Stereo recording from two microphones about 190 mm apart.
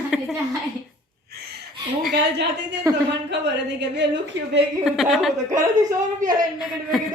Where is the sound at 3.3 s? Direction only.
65° right (ahead or behind).